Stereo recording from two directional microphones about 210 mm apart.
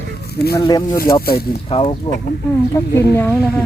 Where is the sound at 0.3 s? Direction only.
50° left (ahead or behind).